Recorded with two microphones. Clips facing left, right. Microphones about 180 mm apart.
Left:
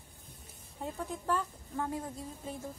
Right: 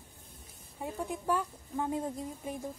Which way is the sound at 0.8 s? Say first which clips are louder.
Right 2 dB; 15° right (ahead or behind).